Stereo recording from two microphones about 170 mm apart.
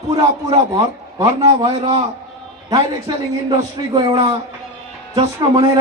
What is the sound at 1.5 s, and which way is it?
Speech, 30° right (ahead or behind).